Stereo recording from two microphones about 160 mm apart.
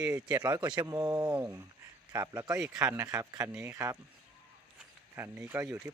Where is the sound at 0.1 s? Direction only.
20° right (ahead or behind).